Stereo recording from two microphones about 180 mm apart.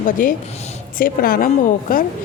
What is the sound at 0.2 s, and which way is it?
Speech, 50° left (ahead or behind).